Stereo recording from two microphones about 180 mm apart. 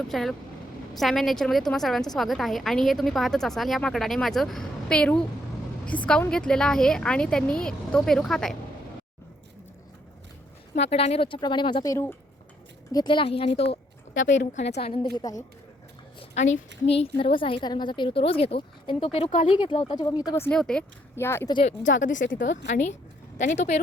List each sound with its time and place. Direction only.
0.1 s a woman's voice: centre (ahead or behind)
10.8 s a woman's voice: 35° left (ahead or behind)
14.1 s a woman's voice: 90° left
14.7 s a woman's voice: 35° left (ahead or behind)
15.1 s a woman's voice: 20° left (ahead or behind)
16.4 s a woman's voice: 40° left (ahead or behind); by 21.5 s 15° left (ahead or behind)
21.5 s a woman's voice: 35° left (ahead or behind)